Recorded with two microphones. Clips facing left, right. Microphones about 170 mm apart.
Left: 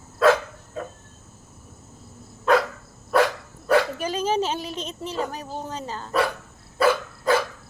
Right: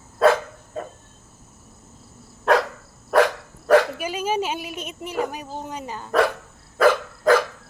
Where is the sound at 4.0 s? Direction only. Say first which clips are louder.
Left 1 dB; 10° right (ahead or behind).